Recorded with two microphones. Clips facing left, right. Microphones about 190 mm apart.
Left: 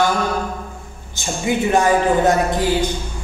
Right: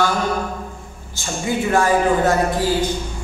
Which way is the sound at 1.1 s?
20° left (ahead or behind).